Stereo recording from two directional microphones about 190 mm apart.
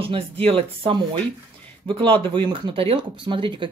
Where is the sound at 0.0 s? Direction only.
30° right (ahead or behind).